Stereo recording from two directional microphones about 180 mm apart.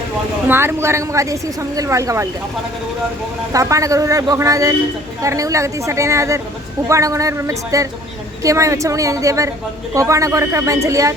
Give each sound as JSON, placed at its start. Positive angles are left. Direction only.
{"t": 0.4, "sound": "a woman's voice", "side_deg": -15}
{"t": 3.5, "sound": "a woman's voice", "side_deg": -20}